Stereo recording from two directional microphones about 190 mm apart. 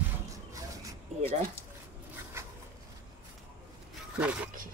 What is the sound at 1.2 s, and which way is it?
Speech, 30° right (ahead or behind).